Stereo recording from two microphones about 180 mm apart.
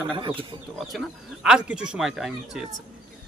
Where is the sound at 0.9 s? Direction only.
Centre (ahead or behind).